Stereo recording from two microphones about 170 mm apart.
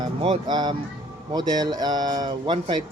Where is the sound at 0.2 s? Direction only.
30° right (ahead or behind).